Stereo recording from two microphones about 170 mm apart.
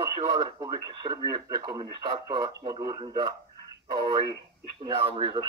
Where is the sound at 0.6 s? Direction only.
25° right (ahead or behind).